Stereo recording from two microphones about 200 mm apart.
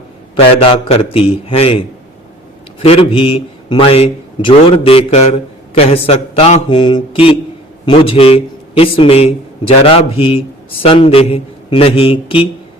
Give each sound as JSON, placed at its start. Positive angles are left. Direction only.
{"t": 0.3, "sound": "a man's voice", "side_deg": 25}
{"t": 2.8, "sound": "a man's voice", "side_deg": 25}